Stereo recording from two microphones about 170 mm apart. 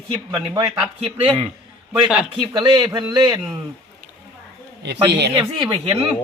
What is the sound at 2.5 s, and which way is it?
Speech, 20° right (ahead or behind).